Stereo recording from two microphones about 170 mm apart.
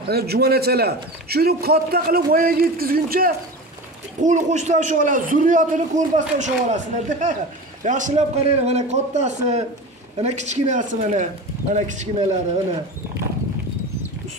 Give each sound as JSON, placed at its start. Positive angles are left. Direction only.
{"t": 0.1, "sound": "a man's voice", "side_deg": -65}
{"t": 4.2, "sound": "a man's voice", "side_deg": -45}